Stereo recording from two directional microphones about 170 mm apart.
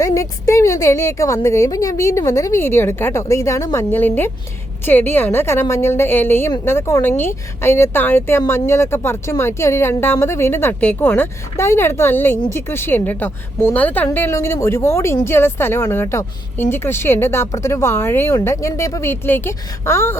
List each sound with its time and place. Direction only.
0.0 s a woman's voice: 20° left (ahead or behind)